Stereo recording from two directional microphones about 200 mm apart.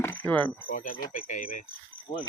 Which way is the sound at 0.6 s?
45° left (ahead or behind).